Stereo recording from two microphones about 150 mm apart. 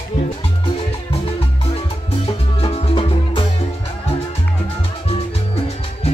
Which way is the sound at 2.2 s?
35° left (ahead or behind).